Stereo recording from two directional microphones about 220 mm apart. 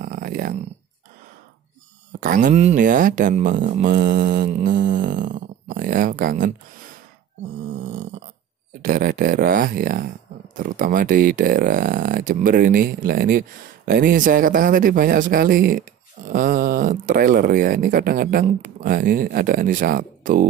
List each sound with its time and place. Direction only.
0.0 s a sound: 40° right (ahead or behind)
2.1 s speech: 40° right (ahead or behind)
7.7 s snoring: 35° right (ahead or behind)
8.8 s speech: 40° right (ahead or behind)